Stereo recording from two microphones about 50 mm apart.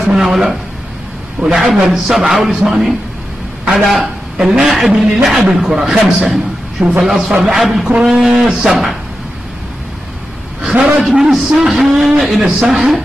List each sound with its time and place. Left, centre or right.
0.0 s a man's voice: centre
7.1 s a man's voice: centre
7.8 s a man's voice: centre
10.6 s a sound: centre
11.3 s a man's voice: centre